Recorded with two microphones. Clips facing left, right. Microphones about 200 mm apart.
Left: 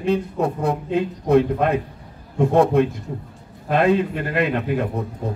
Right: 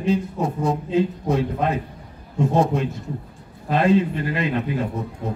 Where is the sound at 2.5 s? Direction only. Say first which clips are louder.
Left 5 dB; 60° left (ahead or behind).